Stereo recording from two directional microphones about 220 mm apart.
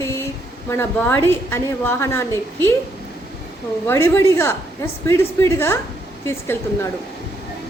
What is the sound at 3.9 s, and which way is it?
A woman's voice, 10° left (ahead or behind).